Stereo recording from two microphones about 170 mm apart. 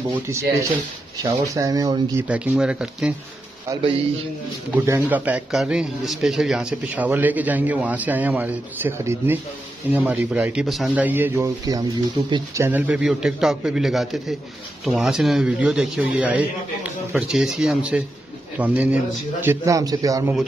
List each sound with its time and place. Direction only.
0.1 s a man's voice: 15° right (ahead or behind)
2.2 s a man's voice: 10° right (ahead or behind)
4.7 s a man's voice: 15° right (ahead or behind)